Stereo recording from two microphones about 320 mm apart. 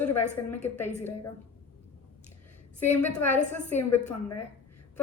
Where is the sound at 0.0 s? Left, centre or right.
Left.